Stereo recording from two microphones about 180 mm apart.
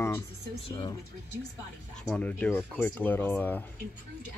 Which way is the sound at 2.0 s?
5° left (ahead or behind).